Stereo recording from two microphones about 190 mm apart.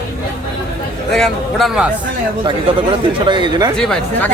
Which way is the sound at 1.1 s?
Centre (ahead or behind).